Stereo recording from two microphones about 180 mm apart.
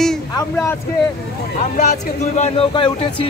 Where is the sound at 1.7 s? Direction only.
40° left (ahead or behind).